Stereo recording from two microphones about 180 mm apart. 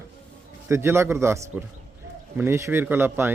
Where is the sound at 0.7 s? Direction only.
15° right (ahead or behind).